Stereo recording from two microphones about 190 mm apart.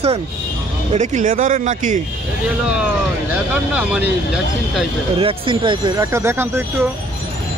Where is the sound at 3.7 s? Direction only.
5° right (ahead or behind).